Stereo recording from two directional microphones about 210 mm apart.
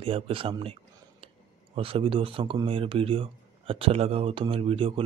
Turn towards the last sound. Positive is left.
turn(degrees=-25)  # may be behind; listen again after turning